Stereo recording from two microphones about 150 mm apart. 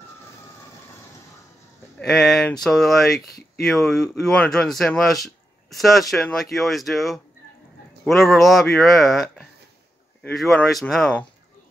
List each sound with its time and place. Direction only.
2.0 s speech: 5° left (ahead or behind)
3.3 s speech: 90° left
3.6 s speech: centre (ahead or behind)